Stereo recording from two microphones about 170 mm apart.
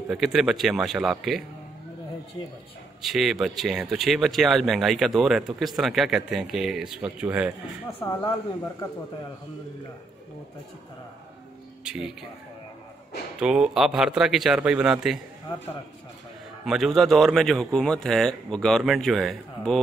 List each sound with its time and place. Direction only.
0.1 s speech: centre (ahead or behind)
3.0 s speech: centre (ahead or behind)
8.0 s speech: 20° left (ahead or behind)
11.8 s speech: 5° right (ahead or behind)
13.4 s speech: 5° right (ahead or behind)
16.6 s speech: centre (ahead or behind)